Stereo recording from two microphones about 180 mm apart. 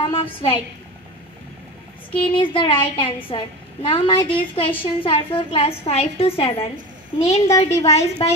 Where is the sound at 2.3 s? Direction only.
30° left (ahead or behind).